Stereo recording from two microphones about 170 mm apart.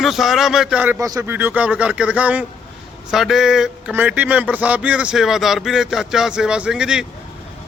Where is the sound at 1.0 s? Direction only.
20° right (ahead or behind).